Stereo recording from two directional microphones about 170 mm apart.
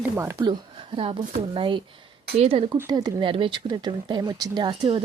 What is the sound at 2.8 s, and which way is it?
Speech, 25° right (ahead or behind).